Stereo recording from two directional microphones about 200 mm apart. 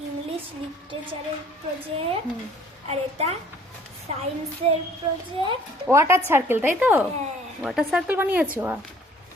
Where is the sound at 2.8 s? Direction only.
30° right (ahead or behind).